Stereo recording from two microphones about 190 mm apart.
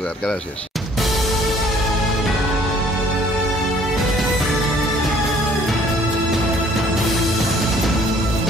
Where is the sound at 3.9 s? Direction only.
Centre (ahead or behind).